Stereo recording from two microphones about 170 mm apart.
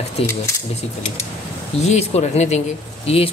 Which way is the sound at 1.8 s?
40° left (ahead or behind).